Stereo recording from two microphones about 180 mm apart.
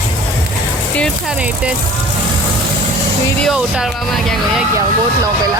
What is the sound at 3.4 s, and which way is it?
Speech, centre (ahead or behind).